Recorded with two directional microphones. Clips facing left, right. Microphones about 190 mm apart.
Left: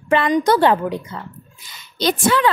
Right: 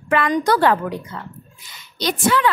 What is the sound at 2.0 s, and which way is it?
Speech, 30° left (ahead or behind).